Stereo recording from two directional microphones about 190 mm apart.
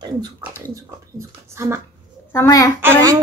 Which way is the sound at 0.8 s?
15° right (ahead or behind).